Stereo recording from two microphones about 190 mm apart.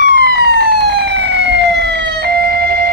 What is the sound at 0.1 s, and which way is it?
Emergency vehicle, 60° right (ahead or behind).